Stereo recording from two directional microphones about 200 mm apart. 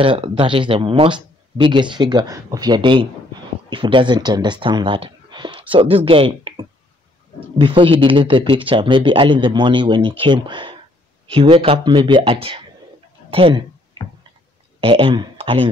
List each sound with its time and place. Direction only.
0.0 s speech: 25° right (ahead or behind)
14.0 s tick-tock: 25° right (ahead or behind)
14.8 s speech: 25° right (ahead or behind)